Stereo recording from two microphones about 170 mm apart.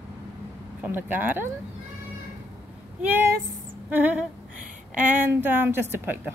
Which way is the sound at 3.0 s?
10° right (ahead or behind).